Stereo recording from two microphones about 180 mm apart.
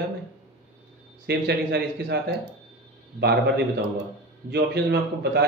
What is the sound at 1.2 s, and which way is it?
A man's voice, 65° right (ahead or behind).